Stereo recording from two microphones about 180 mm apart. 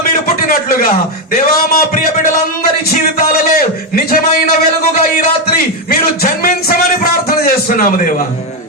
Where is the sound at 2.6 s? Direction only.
55° left (ahead or behind).